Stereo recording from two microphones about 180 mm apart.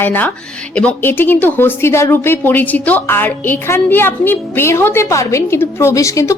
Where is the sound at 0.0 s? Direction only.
10° left (ahead or behind).